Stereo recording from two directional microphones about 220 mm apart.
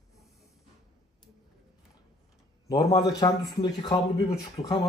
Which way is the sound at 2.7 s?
15° left (ahead or behind).